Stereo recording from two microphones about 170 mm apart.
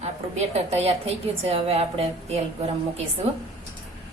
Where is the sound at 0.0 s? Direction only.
40° right (ahead or behind).